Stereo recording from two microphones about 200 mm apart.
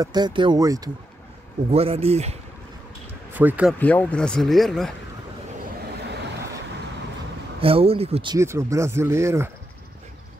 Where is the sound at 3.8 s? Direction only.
5° left (ahead or behind).